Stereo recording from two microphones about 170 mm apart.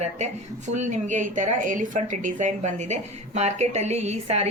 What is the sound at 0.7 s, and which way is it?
A woman's voice, 45° right (ahead or behind).